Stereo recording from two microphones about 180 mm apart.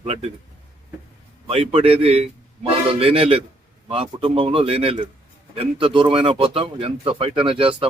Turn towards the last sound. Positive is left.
turn(degrees=-30)  # may be behind; listen again after turning